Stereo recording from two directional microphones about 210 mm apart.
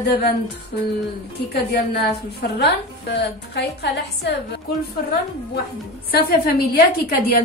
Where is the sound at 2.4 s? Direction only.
55° left (ahead or behind).